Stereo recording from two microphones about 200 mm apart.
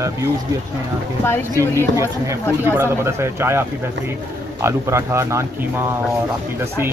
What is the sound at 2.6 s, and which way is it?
A man's voice, 10° right (ahead or behind).